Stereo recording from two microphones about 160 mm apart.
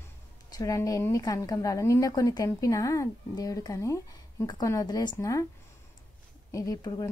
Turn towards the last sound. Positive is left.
turn(degrees=25)  # may be behind; listen again after turning